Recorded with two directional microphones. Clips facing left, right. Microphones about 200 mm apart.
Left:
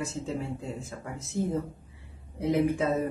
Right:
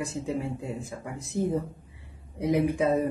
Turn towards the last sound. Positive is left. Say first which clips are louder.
# right 2 dB
turn(degrees=-15)  # may be behind; listen again after turning